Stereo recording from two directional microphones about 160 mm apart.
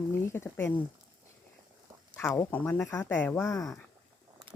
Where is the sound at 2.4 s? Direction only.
10° left (ahead or behind).